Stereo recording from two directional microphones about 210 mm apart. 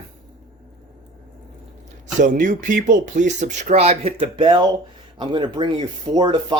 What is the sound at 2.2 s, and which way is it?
Speech, 35° right (ahead or behind).